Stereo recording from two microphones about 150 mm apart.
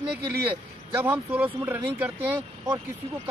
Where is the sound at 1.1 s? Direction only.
10° right (ahead or behind).